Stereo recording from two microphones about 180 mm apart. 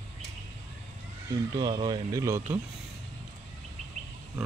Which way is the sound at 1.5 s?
25° right (ahead or behind).